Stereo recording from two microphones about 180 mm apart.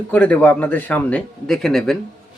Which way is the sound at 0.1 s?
10° left (ahead or behind).